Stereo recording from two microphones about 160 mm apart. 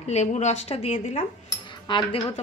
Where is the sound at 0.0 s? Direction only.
45° left (ahead or behind).